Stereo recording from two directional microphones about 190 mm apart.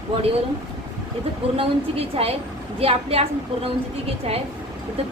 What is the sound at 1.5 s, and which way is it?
A woman's voice, 30° right (ahead or behind).